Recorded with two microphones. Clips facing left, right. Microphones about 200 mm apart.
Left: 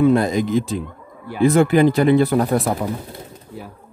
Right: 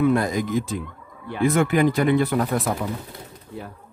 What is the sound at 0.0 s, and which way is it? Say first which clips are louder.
Speech: left 4 dB; 25° left (ahead or behind).